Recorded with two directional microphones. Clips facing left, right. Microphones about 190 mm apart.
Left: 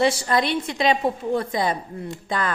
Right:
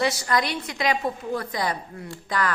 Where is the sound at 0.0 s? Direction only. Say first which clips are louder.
Left 4 dB; 25° left (ahead or behind).